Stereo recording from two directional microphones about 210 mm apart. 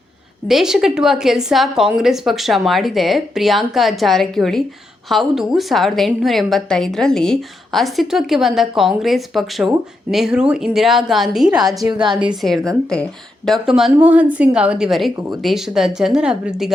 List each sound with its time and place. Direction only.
0.4 s a woman's voice: centre (ahead or behind)
11.9 s a woman's voice: 20° right (ahead or behind)
12.2 s a woman's voice: centre (ahead or behind)